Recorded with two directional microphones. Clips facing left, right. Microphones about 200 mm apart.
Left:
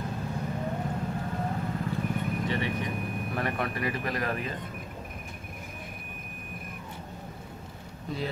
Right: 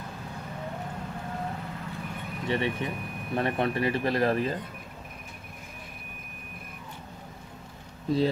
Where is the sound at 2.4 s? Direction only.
25° right (ahead or behind).